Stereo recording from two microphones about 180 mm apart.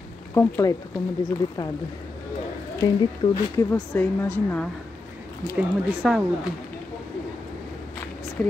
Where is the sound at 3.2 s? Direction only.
35° left (ahead or behind).